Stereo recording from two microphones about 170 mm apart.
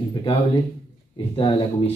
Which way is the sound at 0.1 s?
30° left (ahead or behind).